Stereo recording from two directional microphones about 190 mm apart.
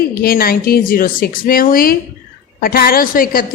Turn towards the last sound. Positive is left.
turn(degrees=50)  # may be behind; listen again after turning